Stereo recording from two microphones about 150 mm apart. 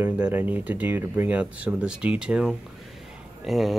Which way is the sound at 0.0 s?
15° right (ahead or behind).